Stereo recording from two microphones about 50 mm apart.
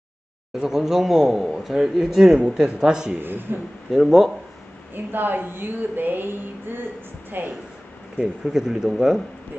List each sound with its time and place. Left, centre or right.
0.6 s a man's voice: centre
3.2 s a woman's voice: right
3.9 s speech: centre
4.9 s a woman's voice: right
8.5 s a man's voice: centre